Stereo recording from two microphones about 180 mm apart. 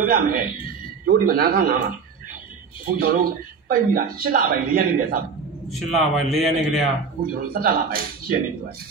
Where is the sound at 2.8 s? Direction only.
55° right (ahead or behind).